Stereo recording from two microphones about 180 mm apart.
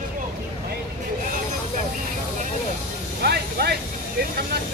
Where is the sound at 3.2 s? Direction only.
60° right (ahead or behind).